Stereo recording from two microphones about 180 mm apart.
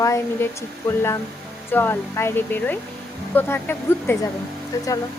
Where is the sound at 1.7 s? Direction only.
15° left (ahead or behind).